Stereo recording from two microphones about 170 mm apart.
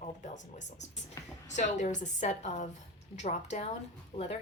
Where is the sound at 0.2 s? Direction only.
45° left (ahead or behind).